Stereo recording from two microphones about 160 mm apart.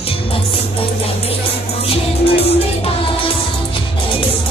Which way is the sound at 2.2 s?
35° left (ahead or behind).